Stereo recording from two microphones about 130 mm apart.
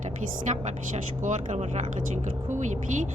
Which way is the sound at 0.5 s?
55° right (ahead or behind).